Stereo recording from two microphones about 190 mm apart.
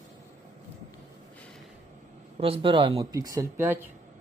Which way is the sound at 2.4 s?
30° right (ahead or behind).